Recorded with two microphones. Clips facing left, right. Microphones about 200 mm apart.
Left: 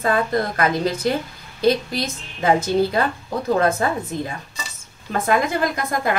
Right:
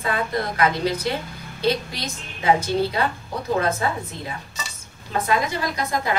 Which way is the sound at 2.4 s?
50° left (ahead or behind).